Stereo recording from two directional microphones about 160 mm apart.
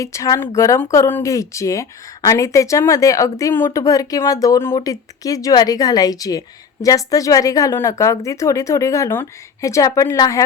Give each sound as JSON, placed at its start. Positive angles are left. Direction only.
{"t": 0.0, "sound": "speech", "side_deg": 20}